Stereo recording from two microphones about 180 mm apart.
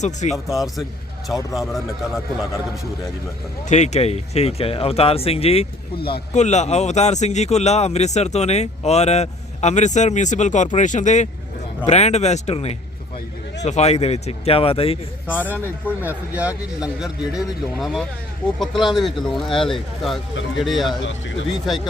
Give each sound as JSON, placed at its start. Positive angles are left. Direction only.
{"t": 0.0, "sound": "a man's voice", "side_deg": 40}
{"t": 0.5, "sound": "speech", "side_deg": 0}
{"t": 3.7, "sound": "a man's voice", "side_deg": 40}
{"t": 15.3, "sound": "speech", "side_deg": 10}
{"t": 16.0, "sound": "speech", "side_deg": -10}